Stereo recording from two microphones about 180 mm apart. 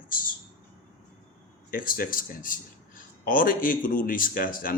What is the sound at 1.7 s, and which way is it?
Speech, 55° left (ahead or behind).